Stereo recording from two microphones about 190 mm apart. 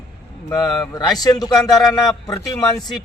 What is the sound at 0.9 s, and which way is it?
A man's voice, 20° left (ahead or behind).